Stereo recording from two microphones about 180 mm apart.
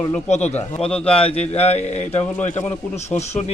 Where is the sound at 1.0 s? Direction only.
30° left (ahead or behind).